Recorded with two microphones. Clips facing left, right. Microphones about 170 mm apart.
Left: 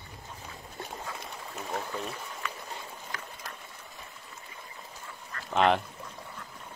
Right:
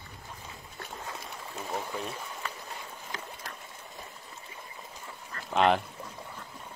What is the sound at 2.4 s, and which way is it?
Boat, 35° right (ahead or behind).